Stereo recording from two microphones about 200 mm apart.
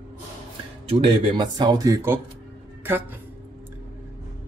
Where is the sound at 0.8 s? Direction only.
25° right (ahead or behind).